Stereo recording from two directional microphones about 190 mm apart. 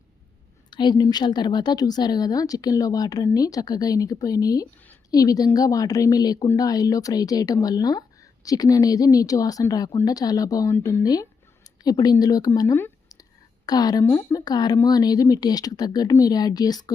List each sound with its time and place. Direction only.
0.7 s a woman's voice: 25° left (ahead or behind)